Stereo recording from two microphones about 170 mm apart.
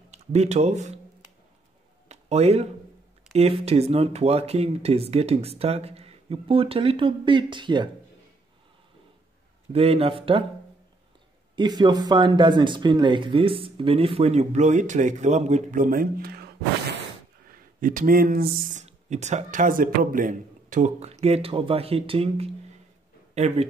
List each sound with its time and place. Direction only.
0.1 s speech: 40° right (ahead or behind)
2.0 s a sound: 40° right (ahead or behind)
3.3 s speech: 40° right (ahead or behind)
9.7 s speech: 35° right (ahead or behind)
11.5 s speech: 25° right (ahead or behind); by 17.0 s 65° right (ahead or behind)
17.7 s speech: 50° right (ahead or behind)